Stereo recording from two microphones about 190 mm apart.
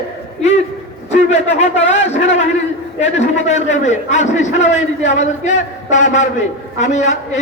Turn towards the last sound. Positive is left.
turn(degrees=40)  # may be behind; listen again after turning